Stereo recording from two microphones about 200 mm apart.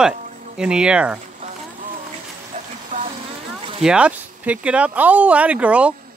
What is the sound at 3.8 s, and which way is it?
Speech, 5° right (ahead or behind).